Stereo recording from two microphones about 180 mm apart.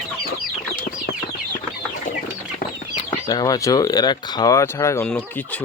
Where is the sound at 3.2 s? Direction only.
20° left (ahead or behind).